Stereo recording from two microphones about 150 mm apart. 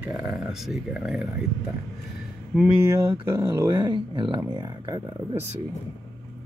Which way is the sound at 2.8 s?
15° right (ahead or behind).